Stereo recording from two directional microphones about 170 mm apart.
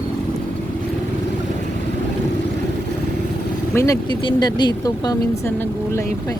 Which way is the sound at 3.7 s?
20° left (ahead or behind).